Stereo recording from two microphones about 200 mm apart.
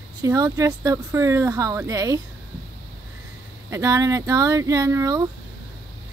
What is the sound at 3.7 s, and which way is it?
Speech, 15° right (ahead or behind).